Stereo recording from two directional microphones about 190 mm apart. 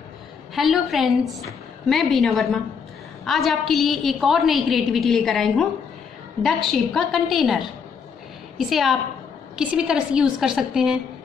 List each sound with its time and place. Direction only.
0.6 s a woman's voice: centre (ahead or behind)